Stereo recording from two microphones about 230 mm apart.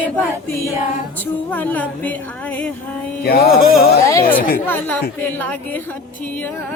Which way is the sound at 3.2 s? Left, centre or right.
Left.